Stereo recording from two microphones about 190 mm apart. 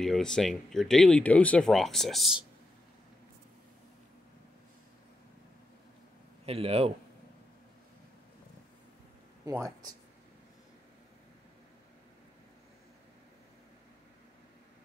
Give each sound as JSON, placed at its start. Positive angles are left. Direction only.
{"t": 0.0, "sound": "speech", "side_deg": 5}
{"t": 6.4, "sound": "speech", "side_deg": -30}
{"t": 9.5, "sound": "speech", "side_deg": -15}